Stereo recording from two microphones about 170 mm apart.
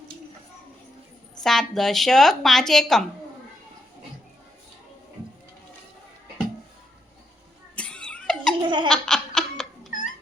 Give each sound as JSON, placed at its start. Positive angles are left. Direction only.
{"t": 1.4, "sound": "a woman's voice", "side_deg": 0}
{"t": 7.8, "sound": "giggle", "side_deg": 5}
{"t": 8.6, "sound": "laughter", "side_deg": -25}
{"t": 8.9, "sound": "laughter", "side_deg": 5}